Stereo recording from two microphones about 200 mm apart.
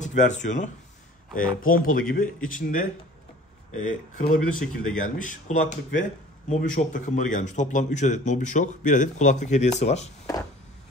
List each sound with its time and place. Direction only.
0.0 s a man's voice: 40° left (ahead or behind)